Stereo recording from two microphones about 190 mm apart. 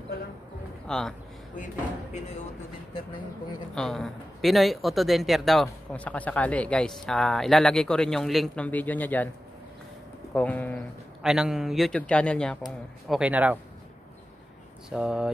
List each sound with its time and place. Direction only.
0.8 s a man's voice: 5° left (ahead or behind)
3.7 s speech: centre (ahead or behind)
10.3 s speech: 10° left (ahead or behind)
11.2 s speech: 5° right (ahead or behind)
13.1 s speech: 5° right (ahead or behind)
14.9 s speech: 5° right (ahead or behind)